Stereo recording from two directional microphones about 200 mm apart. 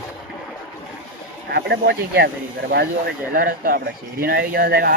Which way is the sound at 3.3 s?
45° right (ahead or behind).